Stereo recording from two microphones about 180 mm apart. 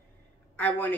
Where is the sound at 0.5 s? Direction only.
10° left (ahead or behind).